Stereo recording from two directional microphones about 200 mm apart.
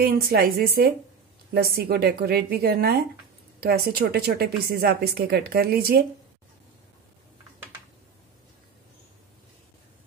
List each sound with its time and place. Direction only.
0.0 s speech: 50° right (ahead or behind)